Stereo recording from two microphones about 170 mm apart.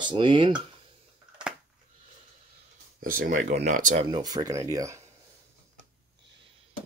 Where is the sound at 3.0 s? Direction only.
55° right (ahead or behind).